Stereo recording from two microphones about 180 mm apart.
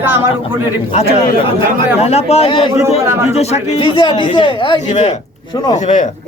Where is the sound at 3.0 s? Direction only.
15° right (ahead or behind).